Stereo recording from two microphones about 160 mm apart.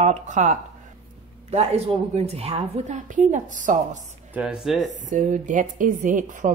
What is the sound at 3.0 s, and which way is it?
A man's voice, 50° right (ahead or behind).